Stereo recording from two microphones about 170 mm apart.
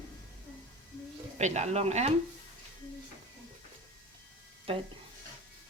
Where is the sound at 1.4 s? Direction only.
40° right (ahead or behind).